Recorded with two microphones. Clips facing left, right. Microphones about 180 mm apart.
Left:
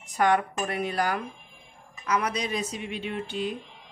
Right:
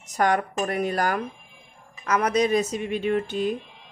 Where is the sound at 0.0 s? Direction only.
40° right (ahead or behind).